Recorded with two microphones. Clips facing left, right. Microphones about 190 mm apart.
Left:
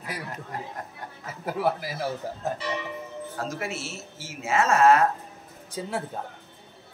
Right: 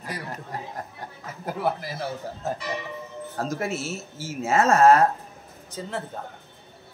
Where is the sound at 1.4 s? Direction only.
5° left (ahead or behind).